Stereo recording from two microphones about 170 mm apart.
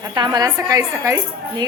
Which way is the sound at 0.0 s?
25° right (ahead or behind).